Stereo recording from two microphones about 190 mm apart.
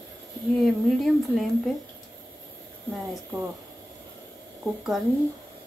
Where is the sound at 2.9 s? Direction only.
Centre (ahead or behind).